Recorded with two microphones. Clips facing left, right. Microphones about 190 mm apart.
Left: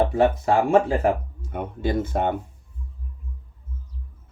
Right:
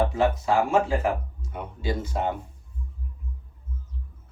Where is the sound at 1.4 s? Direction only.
55° left (ahead or behind).